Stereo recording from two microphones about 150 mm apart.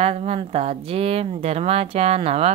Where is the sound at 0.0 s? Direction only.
45° right (ahead or behind).